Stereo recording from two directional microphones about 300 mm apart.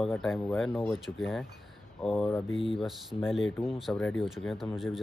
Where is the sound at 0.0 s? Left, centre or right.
Centre.